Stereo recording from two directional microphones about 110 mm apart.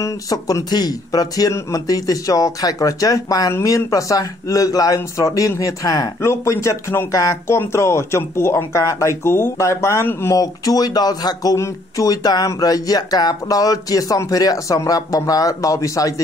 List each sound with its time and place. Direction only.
0.0 s speech: 30° left (ahead or behind)